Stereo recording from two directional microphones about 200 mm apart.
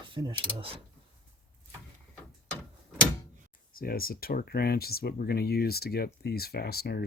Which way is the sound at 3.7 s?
50° left (ahead or behind).